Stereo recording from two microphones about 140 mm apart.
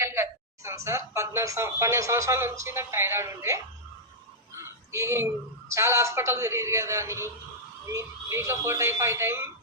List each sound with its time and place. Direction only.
0.0 s a woman's voice: 20° right (ahead or behind)
4.5 s a sound: 20° right (ahead or behind)
5.7 s a woman's voice: 20° right (ahead or behind)